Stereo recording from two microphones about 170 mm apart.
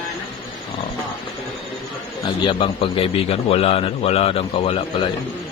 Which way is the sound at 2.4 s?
35° left (ahead or behind).